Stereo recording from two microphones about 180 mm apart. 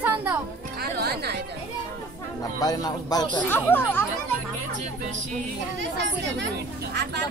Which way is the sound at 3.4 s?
10° left (ahead or behind).